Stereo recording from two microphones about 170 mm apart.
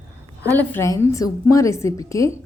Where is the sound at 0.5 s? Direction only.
15° left (ahead or behind).